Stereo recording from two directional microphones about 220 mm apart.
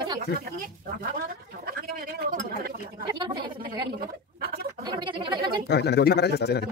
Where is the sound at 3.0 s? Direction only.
20° right (ahead or behind).